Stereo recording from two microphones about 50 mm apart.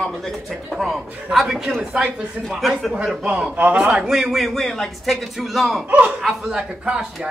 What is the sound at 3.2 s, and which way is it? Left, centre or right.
Speech, right.